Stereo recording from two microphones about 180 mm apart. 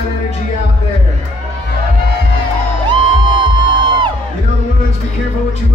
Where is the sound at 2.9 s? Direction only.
25° right (ahead or behind).